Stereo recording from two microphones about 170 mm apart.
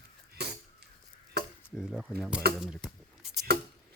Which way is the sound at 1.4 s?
75° right (ahead or behind).